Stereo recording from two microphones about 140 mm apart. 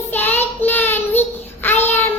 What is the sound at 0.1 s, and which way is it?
Child singing, 15° left (ahead or behind).